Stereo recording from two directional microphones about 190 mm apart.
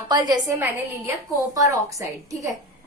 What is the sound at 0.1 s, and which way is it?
Speech, 20° right (ahead or behind).